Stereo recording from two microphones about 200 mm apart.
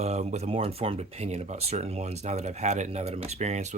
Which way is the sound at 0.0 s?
35° right (ahead or behind).